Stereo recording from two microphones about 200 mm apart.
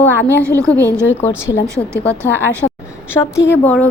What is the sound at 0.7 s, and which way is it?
A woman's voice, 15° right (ahead or behind).